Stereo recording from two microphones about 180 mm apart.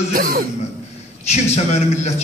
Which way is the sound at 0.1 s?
55° right (ahead or behind).